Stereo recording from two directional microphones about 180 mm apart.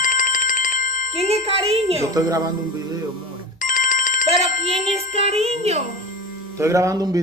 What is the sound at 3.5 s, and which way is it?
Ringtone, 45° left (ahead or behind).